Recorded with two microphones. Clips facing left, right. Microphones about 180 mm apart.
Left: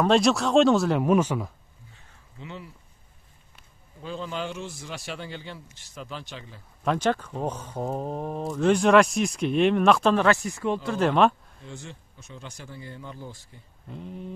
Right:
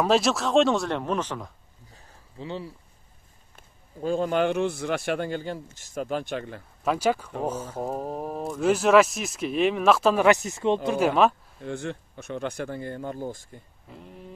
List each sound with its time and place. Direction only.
0.0 s speech: centre (ahead or behind)
1.9 s a sound: 35° right (ahead or behind)
3.5 s a man's voice: 45° right (ahead or behind)
6.8 s speech: 5° right (ahead or behind)
10.2 s speech: 20° right (ahead or behind)
11.0 s speech: 5° right (ahead or behind)
11.6 s speech: 60° right (ahead or behind)
13.8 s speech: centre (ahead or behind)